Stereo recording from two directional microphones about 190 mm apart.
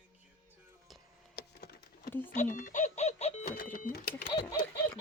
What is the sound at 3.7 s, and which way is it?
Speech, 50° left (ahead or behind).